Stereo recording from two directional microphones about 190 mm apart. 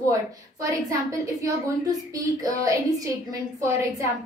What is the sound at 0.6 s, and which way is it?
A woman's voice, 15° right (ahead or behind).